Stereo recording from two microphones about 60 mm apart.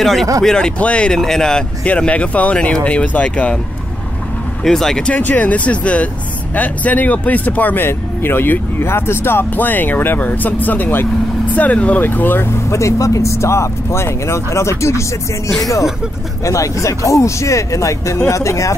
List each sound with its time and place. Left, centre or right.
0.0 s speech: centre
0.7 s speech: left
1.9 s speech: centre
4.6 s speech: centre
5.1 s speech: left
12.6 s speech: left